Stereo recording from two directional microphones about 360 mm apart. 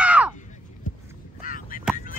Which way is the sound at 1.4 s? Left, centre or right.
Left.